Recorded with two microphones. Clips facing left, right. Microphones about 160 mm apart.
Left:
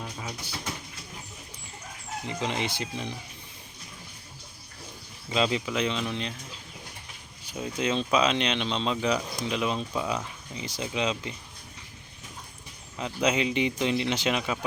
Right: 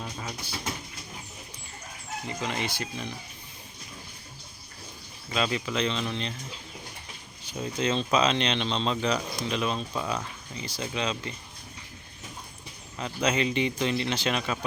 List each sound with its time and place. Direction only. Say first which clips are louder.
0.0 s a sound: even; 5° left (ahead or behind)
2.2 s speech: left 2 dB; 20° left (ahead or behind)
5.3 s speech: left 2 dB; 20° left (ahead or behind)
7.5 s speech: even; 10° left (ahead or behind)
13.0 s speech: left 1 dB; 15° left (ahead or behind)